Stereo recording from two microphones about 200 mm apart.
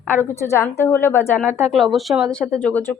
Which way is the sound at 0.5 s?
10° left (ahead or behind).